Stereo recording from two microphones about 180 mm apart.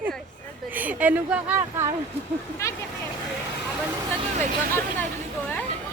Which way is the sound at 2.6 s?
15° left (ahead or behind).